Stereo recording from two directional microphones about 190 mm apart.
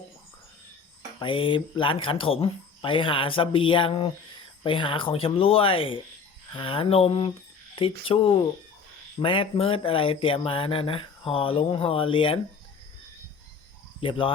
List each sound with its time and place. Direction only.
1.2 s speech: 25° left (ahead or behind)
9.2 s speech: 30° left (ahead or behind)
14.0 s speech: 25° left (ahead or behind)